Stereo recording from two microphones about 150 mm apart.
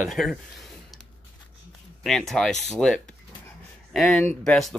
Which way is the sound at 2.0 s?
Centre (ahead or behind).